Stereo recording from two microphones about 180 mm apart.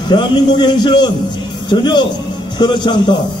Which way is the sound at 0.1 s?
25° left (ahead or behind).